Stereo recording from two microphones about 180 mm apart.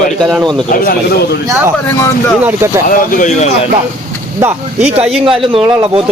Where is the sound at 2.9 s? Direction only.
45° left (ahead or behind).